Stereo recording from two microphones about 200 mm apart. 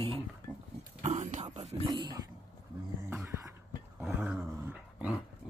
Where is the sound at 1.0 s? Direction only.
35° right (ahead or behind).